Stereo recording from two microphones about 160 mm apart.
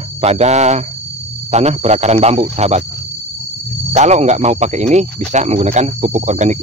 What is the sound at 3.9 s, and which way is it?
Speech, 45° right (ahead or behind).